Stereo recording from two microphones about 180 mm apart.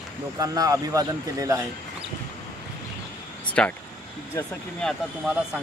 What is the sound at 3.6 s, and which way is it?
Speech, 5° left (ahead or behind).